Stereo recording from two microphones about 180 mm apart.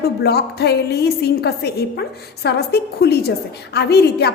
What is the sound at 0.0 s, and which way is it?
A woman's voice, 60° left (ahead or behind).